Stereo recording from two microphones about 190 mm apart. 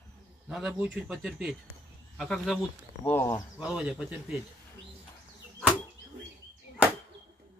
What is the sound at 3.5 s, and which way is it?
Speech, 5° right (ahead or behind).